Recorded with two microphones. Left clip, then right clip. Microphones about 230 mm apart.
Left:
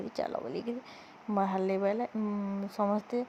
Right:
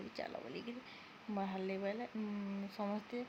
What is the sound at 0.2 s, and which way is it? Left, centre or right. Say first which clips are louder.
Speech: left 11 dB; left.